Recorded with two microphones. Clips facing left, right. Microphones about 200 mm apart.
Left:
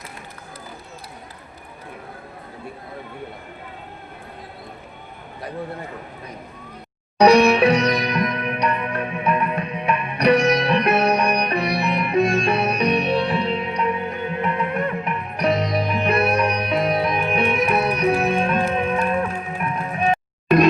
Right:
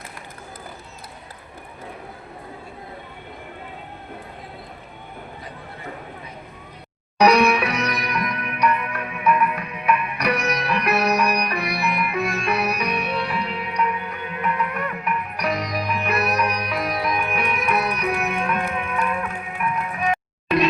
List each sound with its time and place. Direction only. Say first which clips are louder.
7.2 s music: left 4 dB; 30° left (ahead or behind)